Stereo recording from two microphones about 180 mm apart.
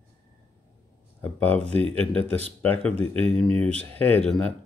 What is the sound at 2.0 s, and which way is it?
Speech, 5° left (ahead or behind).